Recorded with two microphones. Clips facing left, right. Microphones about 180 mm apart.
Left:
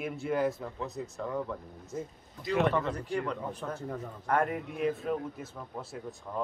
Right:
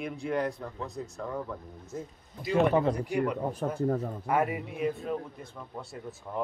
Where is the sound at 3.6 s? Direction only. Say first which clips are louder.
Right 7 dB; 45° right (ahead or behind).